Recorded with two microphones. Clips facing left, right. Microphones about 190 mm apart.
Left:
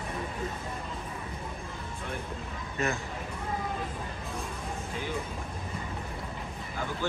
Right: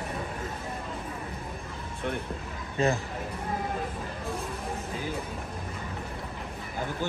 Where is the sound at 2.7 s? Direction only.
30° right (ahead or behind).